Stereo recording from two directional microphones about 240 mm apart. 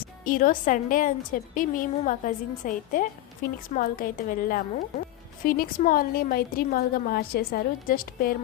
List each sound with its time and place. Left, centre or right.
0.3 s a woman's voice: left